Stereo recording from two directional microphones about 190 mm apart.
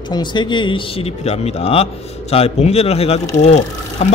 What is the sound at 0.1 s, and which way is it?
A man's voice, 25° left (ahead or behind).